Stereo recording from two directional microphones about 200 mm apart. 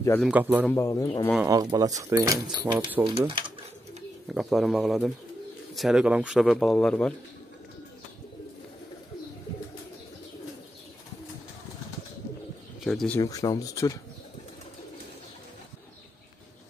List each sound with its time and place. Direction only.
0.2 s speech: 10° right (ahead or behind)
0.7 s speech: 15° left (ahead or behind)
1.4 s speech: 20° right (ahead or behind)
3.0 s speech: 25° right (ahead or behind)
4.3 s speech: centre (ahead or behind)
12.8 s speech: centre (ahead or behind)
13.2 s speech: 15° left (ahead or behind)